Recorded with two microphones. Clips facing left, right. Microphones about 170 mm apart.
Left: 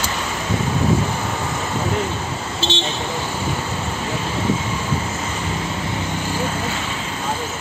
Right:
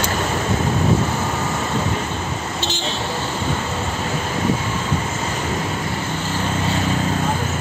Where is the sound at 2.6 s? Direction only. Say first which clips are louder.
Left 2 dB; 25° left (ahead or behind).